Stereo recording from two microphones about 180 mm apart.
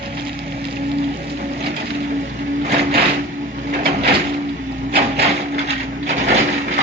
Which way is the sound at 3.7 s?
55° right (ahead or behind).